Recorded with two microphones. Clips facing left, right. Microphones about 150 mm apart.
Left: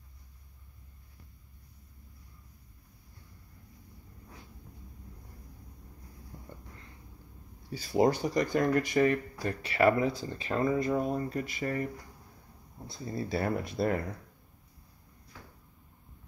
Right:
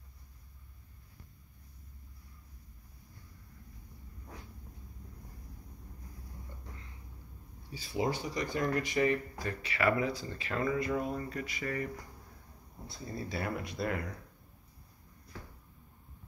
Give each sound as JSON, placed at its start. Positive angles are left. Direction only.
{"t": 7.7, "sound": "speech", "side_deg": 40}
{"t": 13.3, "sound": "speech", "side_deg": 35}